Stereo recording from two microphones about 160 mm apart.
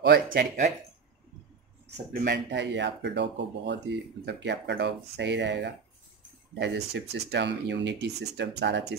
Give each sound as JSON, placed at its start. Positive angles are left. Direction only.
{"t": 0.0, "sound": "speech", "side_deg": -85}
{"t": 2.2, "sound": "speech", "side_deg": -90}